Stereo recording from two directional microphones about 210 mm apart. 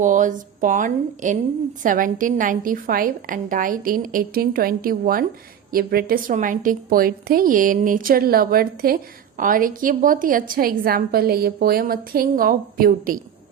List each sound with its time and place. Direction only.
0.0 s a woman's voice: 40° right (ahead or behind)